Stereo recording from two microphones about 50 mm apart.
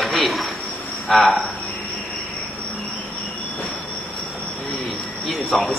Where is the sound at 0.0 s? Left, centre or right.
Centre.